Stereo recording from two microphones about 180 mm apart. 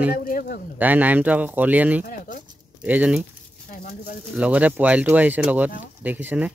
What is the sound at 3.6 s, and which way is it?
Speech, 45° left (ahead or behind).